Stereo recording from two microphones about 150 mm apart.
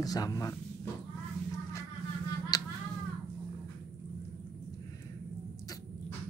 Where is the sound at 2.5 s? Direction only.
25° left (ahead or behind).